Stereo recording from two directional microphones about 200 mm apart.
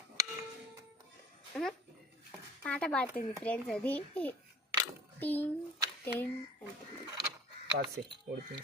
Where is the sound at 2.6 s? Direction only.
5° left (ahead or behind).